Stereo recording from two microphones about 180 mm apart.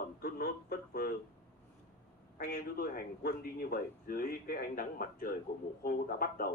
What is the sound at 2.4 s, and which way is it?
A man's voice, 55° left (ahead or behind).